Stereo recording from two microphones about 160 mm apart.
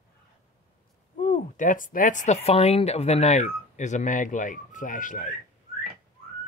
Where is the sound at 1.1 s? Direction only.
50° left (ahead or behind).